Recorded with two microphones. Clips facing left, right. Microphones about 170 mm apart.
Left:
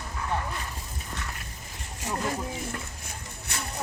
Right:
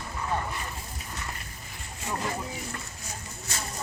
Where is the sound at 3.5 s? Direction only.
60° left (ahead or behind).